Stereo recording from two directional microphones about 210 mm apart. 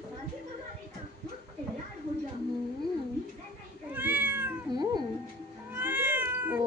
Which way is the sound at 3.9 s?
10° right (ahead or behind).